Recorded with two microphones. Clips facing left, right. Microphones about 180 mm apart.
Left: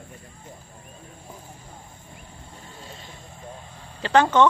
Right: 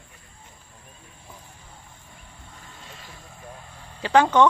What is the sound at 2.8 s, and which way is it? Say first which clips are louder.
Vehicle: left 4 dB; 30° left (ahead or behind).